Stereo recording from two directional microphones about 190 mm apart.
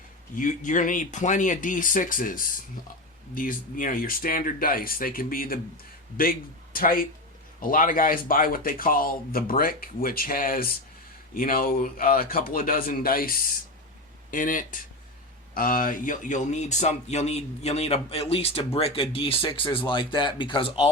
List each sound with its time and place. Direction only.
0.3 s speech: 40° left (ahead or behind)